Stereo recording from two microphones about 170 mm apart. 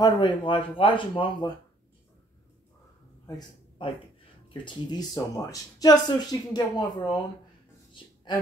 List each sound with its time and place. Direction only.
0.0 s speech: 30° left (ahead or behind)
3.3 s a man's voice: 25° left (ahead or behind)